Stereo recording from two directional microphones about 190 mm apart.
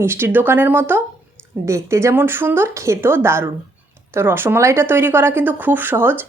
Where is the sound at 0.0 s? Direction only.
10° right (ahead or behind).